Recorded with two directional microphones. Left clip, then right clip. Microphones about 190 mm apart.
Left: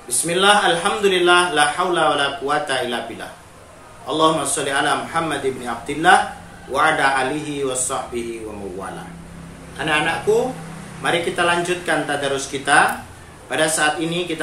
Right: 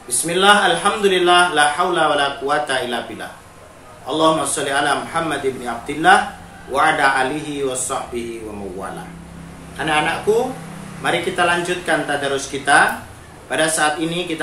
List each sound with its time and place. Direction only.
0.3 s a man's voice: 5° left (ahead or behind)
9.8 s a man's voice: 5° left (ahead or behind)